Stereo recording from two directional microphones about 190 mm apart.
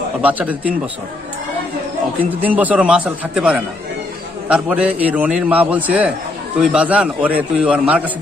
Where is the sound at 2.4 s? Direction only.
10° right (ahead or behind).